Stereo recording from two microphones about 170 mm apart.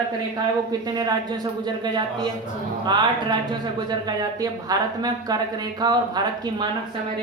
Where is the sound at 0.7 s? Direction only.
25° right (ahead or behind).